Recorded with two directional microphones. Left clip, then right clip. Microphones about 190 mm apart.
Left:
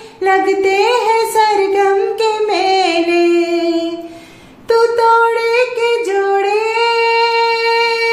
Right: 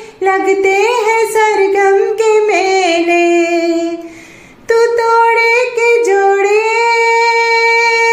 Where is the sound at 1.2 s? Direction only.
15° right (ahead or behind).